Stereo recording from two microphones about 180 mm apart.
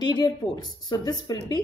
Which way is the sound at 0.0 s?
25° left (ahead or behind).